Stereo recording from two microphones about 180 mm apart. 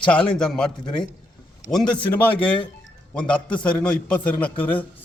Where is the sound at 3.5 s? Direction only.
5° left (ahead or behind).